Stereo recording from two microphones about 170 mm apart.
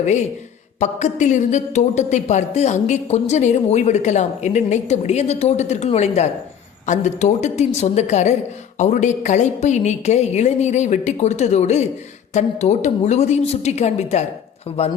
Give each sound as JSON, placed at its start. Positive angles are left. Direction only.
{"t": 0.0, "sound": "a woman's voice", "side_deg": 45}